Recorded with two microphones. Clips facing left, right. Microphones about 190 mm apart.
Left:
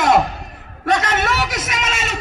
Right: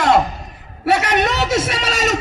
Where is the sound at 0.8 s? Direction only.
10° right (ahead or behind); by 2.2 s 40° right (ahead or behind).